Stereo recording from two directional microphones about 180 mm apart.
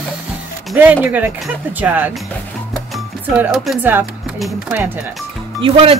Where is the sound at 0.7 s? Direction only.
10° right (ahead or behind).